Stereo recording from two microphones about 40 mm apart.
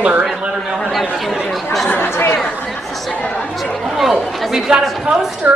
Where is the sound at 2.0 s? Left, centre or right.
Left.